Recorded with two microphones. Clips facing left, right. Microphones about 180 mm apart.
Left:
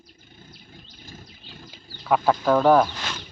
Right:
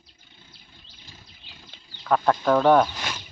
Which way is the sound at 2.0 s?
5° left (ahead or behind).